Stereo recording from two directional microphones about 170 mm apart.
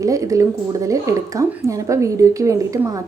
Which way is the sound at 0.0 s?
20° right (ahead or behind).